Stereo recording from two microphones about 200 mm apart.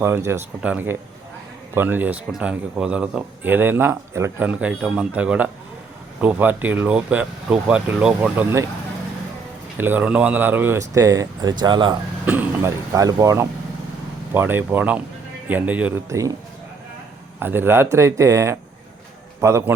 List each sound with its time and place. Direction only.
0.0 s speech: 15° right (ahead or behind)
9.7 s speech: 10° right (ahead or behind)
12.2 s speech: 10° right (ahead or behind)
17.4 s speech: 10° right (ahead or behind)